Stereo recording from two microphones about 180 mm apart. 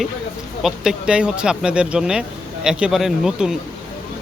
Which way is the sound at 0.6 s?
5° right (ahead or behind).